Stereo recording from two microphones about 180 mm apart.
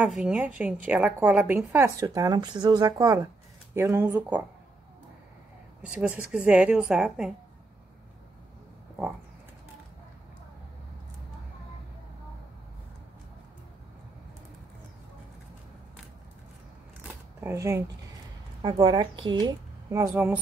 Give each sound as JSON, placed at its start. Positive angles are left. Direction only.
{"t": 0.0, "sound": "a woman's voice", "side_deg": -5}
{"t": 5.8, "sound": "speech", "side_deg": -5}
{"t": 17.4, "sound": "a woman's voice", "side_deg": -15}